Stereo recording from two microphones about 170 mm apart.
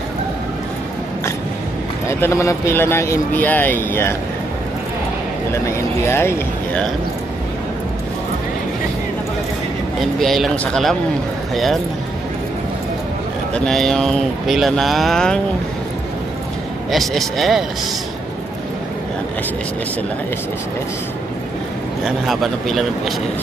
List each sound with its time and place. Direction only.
2.0 s speech: 15° left (ahead or behind)
6.0 s speech: 15° left (ahead or behind)
10.2 s speech: centre (ahead or behind)
13.7 s speech: centre (ahead or behind)
16.9 s speech: centre (ahead or behind)
22.0 s speech: centre (ahead or behind)